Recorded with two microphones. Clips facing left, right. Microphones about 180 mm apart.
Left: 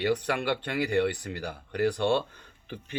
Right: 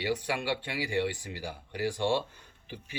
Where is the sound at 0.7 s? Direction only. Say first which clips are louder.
Left 7 dB; 55° left (ahead or behind).